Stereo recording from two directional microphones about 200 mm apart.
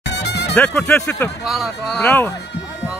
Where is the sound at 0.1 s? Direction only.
55° left (ahead or behind).